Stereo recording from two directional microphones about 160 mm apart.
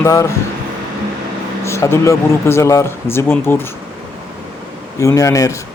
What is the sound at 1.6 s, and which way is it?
Speech, 15° left (ahead or behind).